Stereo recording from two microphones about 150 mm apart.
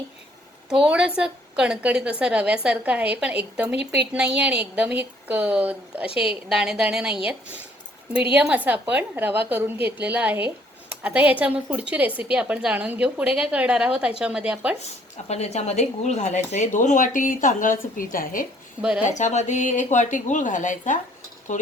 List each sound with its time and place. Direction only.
0.7 s a woman's voice: 5° right (ahead or behind)
15.3 s speech: 45° left (ahead or behind); by 18.4 s 65° left (ahead or behind)
18.8 s a woman's voice: 5° right (ahead or behind)
19.0 s speech: 55° left (ahead or behind)